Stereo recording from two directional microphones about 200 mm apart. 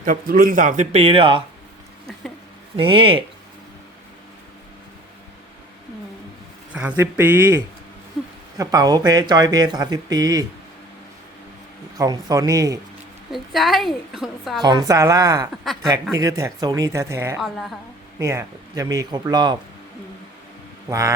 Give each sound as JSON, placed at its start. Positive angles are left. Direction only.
{"t": 0.0, "sound": "a man's voice", "side_deg": -45}
{"t": 2.7, "sound": "speech", "side_deg": -25}
{"t": 6.7, "sound": "speech", "side_deg": -10}
{"t": 11.9, "sound": "speech", "side_deg": -20}
{"t": 13.3, "sound": "a woman's voice", "side_deg": 0}
{"t": 14.6, "sound": "speech", "side_deg": -20}
{"t": 15.7, "sound": "a woman's voice", "side_deg": 0}
{"t": 16.1, "sound": "speech", "side_deg": -15}
{"t": 17.4, "sound": "a woman's voice", "side_deg": 0}
{"t": 18.2, "sound": "speech", "side_deg": -15}